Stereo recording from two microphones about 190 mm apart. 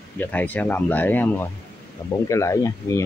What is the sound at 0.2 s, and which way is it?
Speech, 10° left (ahead or behind).